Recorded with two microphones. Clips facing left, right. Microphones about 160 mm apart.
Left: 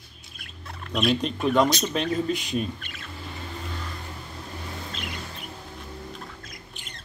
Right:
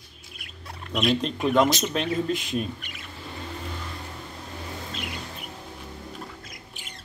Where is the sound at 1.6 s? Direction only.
20° right (ahead or behind).